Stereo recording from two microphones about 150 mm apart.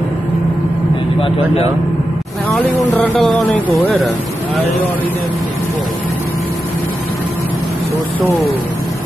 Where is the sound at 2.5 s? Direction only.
Centre (ahead or behind).